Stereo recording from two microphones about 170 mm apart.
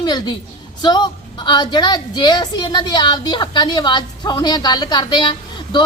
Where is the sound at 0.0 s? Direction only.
25° left (ahead or behind).